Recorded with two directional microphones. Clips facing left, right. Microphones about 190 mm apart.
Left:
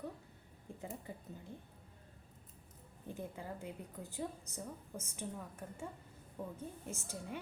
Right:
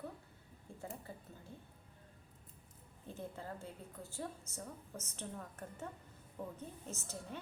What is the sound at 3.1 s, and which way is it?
A woman's voice, 15° left (ahead or behind).